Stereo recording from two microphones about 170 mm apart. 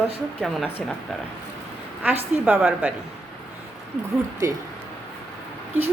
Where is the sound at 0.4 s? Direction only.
5° left (ahead or behind).